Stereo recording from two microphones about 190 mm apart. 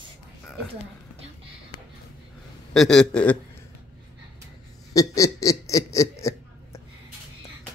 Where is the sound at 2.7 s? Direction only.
5° left (ahead or behind).